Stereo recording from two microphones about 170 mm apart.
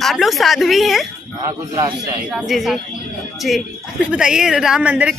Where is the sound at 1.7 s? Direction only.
20° right (ahead or behind).